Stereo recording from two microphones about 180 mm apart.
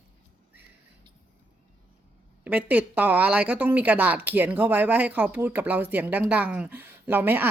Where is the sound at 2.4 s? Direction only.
10° right (ahead or behind).